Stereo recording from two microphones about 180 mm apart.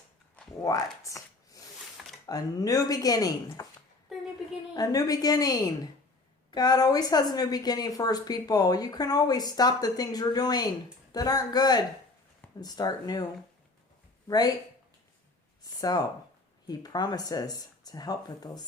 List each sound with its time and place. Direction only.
0.6 s a woman's voice: 20° left (ahead or behind)
4.1 s a sound: centre (ahead or behind)
4.7 s a woman's voice: 20° left (ahead or behind)
14.3 s a woman's voice: 20° left (ahead or behind)
15.6 s a woman's voice: 20° left (ahead or behind)